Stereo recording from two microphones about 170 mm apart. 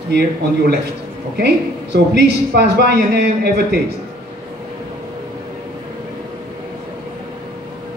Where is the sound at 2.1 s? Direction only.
85° right.